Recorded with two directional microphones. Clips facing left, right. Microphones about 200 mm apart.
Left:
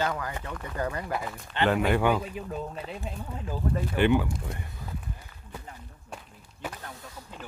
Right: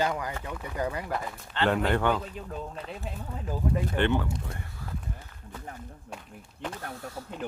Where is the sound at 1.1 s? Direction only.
5° left (ahead or behind).